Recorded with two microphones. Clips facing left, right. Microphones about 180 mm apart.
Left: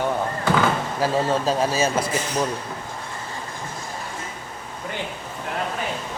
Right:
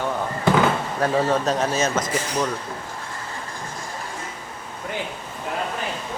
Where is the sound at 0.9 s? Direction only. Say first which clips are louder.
Right 1 dB; 5° left (ahead or behind).